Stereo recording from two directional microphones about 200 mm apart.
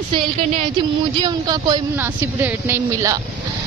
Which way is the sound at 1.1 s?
20° right (ahead or behind).